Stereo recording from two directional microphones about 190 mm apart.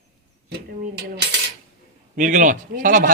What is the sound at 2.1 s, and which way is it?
A man's voice, 40° right (ahead or behind).